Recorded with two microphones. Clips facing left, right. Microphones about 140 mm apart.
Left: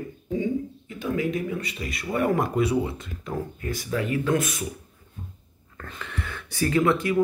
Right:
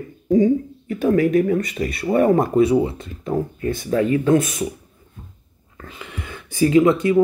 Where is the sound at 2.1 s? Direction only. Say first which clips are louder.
Right 7 dB; 25° right (ahead or behind).